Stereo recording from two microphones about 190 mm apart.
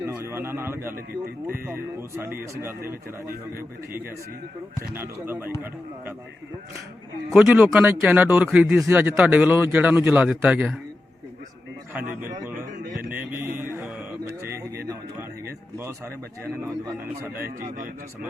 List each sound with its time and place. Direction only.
0.0 s a man's voice: 15° right (ahead or behind)
2.8 s a man's voice: 50° right (ahead or behind)
4.9 s a man's voice: 10° right (ahead or behind)
7.3 s a man's voice: 5° right (ahead or behind)
13.0 s a sound: 10° right (ahead or behind)
17.7 s a man's voice: 45° right (ahead or behind)